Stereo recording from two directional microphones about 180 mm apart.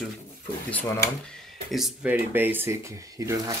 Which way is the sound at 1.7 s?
Centre (ahead or behind).